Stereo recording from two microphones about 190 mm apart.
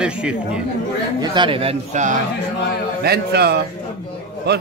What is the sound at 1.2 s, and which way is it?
Speech, 25° right (ahead or behind).